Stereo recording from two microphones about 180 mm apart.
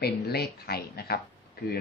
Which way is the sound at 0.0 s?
65° left (ahead or behind).